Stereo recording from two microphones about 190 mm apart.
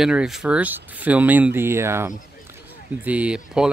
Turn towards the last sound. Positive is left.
turn(degrees=-5)  # may be behind; listen again after turning